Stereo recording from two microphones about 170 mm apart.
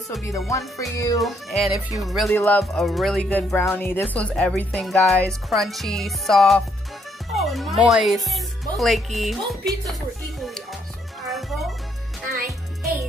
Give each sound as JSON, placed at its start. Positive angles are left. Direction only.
{"t": 0.5, "sound": "music", "side_deg": 20}
{"t": 1.2, "sound": "speech", "side_deg": 0}
{"t": 2.2, "sound": "speech", "side_deg": 10}
{"t": 2.6, "sound": "speech", "side_deg": 0}
{"t": 11.2, "sound": "music", "side_deg": 0}